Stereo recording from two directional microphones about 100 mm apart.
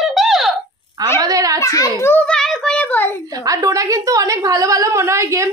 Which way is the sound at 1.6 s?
35° left (ahead or behind).